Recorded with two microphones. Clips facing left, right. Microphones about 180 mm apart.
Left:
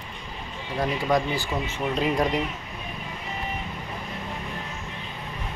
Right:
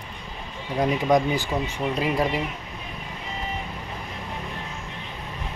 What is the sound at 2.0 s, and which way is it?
Speech, 5° right (ahead or behind).